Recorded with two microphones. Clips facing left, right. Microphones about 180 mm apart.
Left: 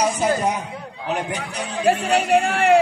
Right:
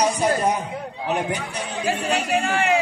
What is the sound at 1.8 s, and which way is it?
Speech, 55° left (ahead or behind).